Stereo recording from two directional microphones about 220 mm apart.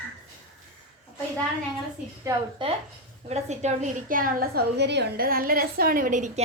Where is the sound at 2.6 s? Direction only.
20° right (ahead or behind).